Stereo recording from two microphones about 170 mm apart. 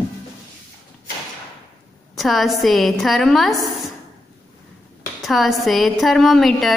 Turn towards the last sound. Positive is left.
turn(degrees=0)  # may be behind; listen again after turning